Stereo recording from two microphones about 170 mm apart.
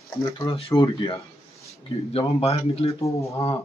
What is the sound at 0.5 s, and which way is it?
A man's voice, 35° left (ahead or behind).